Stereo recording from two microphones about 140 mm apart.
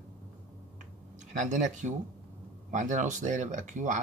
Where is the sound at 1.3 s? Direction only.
60° right (ahead or behind).